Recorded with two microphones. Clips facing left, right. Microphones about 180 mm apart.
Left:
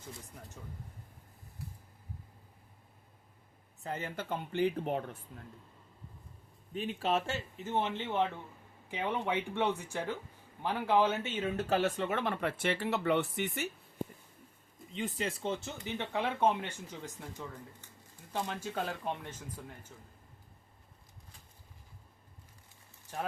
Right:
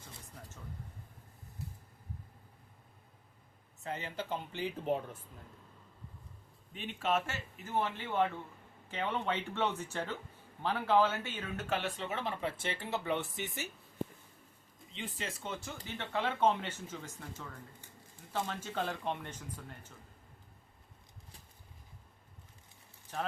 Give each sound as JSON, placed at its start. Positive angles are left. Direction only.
{"t": 3.8, "sound": "speech", "side_deg": 45}
{"t": 6.7, "sound": "a man's voice", "side_deg": 35}
{"t": 11.7, "sound": "speech", "side_deg": 50}
{"t": 14.9, "sound": "speech", "side_deg": 40}
{"t": 18.4, "sound": "speech", "side_deg": 10}